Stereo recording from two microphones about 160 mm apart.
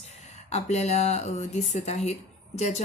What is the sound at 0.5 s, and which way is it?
Speech, 45° left (ahead or behind).